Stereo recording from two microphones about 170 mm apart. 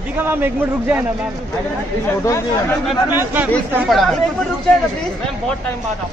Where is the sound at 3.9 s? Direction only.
Centre (ahead or behind).